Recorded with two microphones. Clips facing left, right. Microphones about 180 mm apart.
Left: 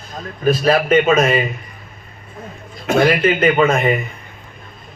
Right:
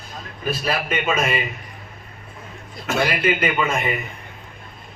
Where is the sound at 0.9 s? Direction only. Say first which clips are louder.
Left 8 dB; 45° left (ahead or behind).